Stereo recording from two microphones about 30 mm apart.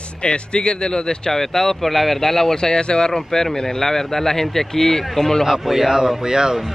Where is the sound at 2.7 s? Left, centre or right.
Left.